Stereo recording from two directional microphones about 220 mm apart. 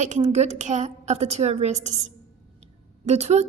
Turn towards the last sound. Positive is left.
turn(degrees=-30)  # may be behind; listen again after turning